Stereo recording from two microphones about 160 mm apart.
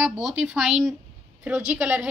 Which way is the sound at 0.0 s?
5° right (ahead or behind).